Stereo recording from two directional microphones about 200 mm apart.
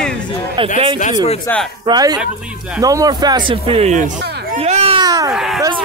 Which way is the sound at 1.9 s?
20° right (ahead or behind).